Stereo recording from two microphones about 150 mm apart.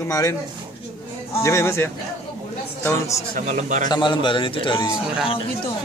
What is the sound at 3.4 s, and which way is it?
Speech, 55° right (ahead or behind).